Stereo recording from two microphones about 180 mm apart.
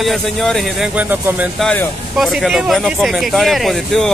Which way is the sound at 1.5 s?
Centre (ahead or behind).